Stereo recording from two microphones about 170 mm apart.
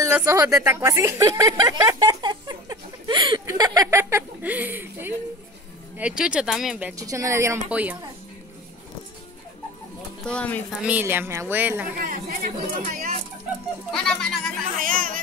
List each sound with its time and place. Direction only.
0.0 s a sound: 15° right (ahead or behind)
5.9 s speech: 5° right (ahead or behind)
7.0 s a woman's voice: 20° right (ahead or behind)
10.2 s speech: 5° left (ahead or behind)
10.8 s a woman's voice: 10° right (ahead or behind)
12.0 s speech: 55° right (ahead or behind)
13.9 s speech: 5° left (ahead or behind)
14.8 s speech: 55° right (ahead or behind)